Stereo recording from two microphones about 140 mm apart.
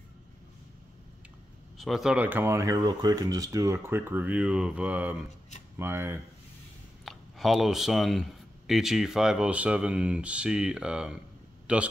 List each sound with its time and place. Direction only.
1.8 s speech: centre (ahead or behind); by 6.2 s 15° right (ahead or behind)
7.1 s speech: centre (ahead or behind)
11.6 s a sound: 10° right (ahead or behind)